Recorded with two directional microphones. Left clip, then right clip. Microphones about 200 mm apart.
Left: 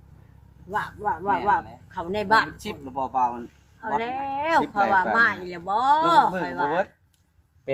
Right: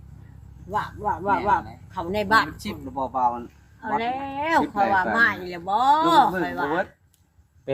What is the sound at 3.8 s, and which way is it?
Speech, centre (ahead or behind).